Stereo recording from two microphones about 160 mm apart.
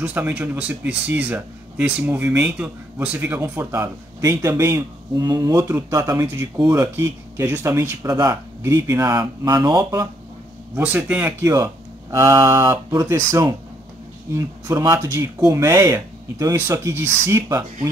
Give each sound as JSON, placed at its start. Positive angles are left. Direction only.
{"t": 0.0, "sound": "speech", "side_deg": -10}
{"t": 10.8, "sound": "speech", "side_deg": -10}